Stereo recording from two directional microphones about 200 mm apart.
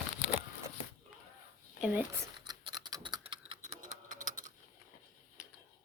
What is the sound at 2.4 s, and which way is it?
Typing, 20° right (ahead or behind).